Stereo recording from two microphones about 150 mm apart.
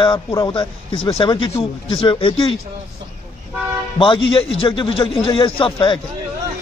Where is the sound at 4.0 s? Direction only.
35° left (ahead or behind).